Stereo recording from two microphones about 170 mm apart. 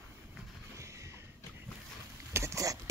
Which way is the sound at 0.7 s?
15° right (ahead or behind).